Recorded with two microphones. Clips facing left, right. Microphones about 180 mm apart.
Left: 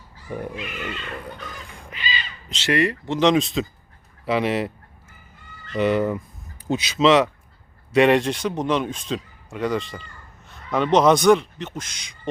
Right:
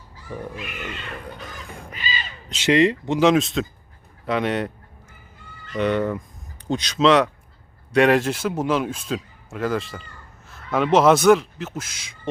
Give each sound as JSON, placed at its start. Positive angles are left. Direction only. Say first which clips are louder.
{"t": 1.9, "sound": "crow", "louder": "left 1 dB", "side_deg": -45}
{"t": 2.5, "sound": "speech", "louder": "right 4 dB", "side_deg": -15}
{"t": 3.2, "sound": "speech", "louder": "even", "side_deg": -5}
{"t": 5.7, "sound": "speech", "louder": "left 1 dB", "side_deg": 5}